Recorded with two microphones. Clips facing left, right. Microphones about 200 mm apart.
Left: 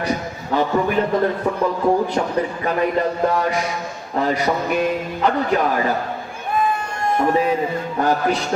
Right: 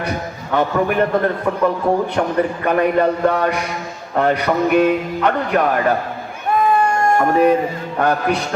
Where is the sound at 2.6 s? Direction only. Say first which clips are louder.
Right 5 dB; 65° right (ahead or behind).